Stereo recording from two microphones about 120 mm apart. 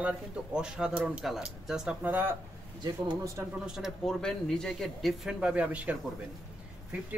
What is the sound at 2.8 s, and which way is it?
Speech, 35° right (ahead or behind).